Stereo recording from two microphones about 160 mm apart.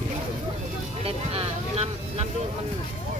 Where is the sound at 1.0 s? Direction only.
40° right (ahead or behind).